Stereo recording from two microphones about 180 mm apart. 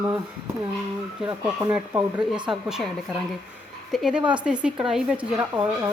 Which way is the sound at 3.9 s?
5° right (ahead or behind).